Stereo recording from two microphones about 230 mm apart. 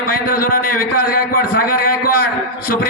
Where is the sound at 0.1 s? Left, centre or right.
Left.